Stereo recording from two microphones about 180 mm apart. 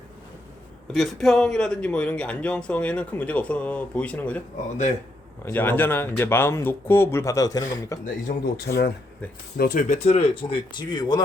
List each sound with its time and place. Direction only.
0.9 s speech: centre (ahead or behind)
5.5 s speech: 10° left (ahead or behind)
8.3 s speech: 55° left (ahead or behind)
9.6 s speech: 45° left (ahead or behind); by 11.2 s 25° left (ahead or behind)